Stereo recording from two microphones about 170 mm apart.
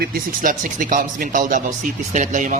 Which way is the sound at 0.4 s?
50° right (ahead or behind).